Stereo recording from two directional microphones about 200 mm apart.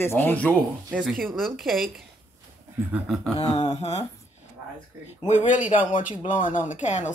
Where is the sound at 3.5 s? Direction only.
20° left (ahead or behind).